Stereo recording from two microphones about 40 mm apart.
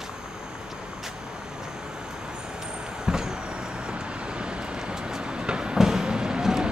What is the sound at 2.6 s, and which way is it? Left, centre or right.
Vehicle, centre.